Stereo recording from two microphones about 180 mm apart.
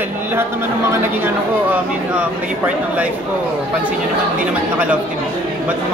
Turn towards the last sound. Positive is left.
turn(degrees=-5)  # may be behind; listen again after turning